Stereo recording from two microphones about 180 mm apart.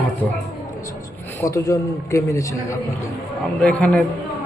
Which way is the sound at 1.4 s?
15° left (ahead or behind).